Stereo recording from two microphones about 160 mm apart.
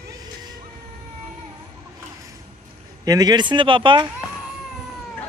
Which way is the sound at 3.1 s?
25° right (ahead or behind).